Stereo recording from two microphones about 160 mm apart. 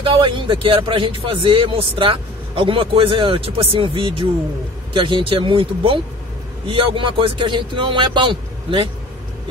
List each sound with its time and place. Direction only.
0.0 s speech: 35° right (ahead or behind)